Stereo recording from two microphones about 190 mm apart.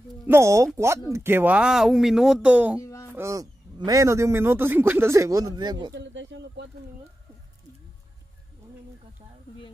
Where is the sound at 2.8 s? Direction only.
15° left (ahead or behind).